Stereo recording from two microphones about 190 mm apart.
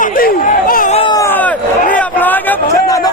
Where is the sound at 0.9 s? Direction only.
30° left (ahead or behind).